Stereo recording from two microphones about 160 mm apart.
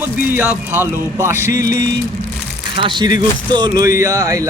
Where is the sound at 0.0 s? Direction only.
10° right (ahead or behind).